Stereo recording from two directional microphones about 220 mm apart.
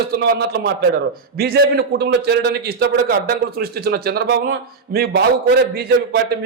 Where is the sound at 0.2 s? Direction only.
45° right (ahead or behind).